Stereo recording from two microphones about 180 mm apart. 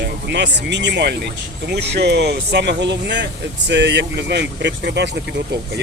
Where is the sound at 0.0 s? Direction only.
70° right (ahead or behind).